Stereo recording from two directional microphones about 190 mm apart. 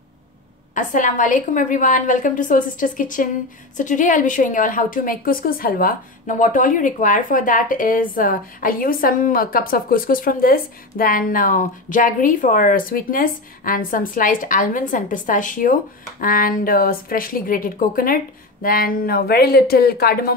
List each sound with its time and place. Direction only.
0.7 s a woman's voice: 40° left (ahead or behind)